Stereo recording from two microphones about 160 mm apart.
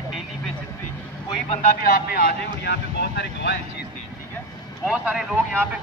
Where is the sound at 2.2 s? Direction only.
90° left.